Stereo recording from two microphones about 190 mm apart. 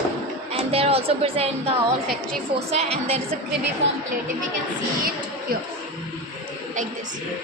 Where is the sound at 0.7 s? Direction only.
30° right (ahead or behind).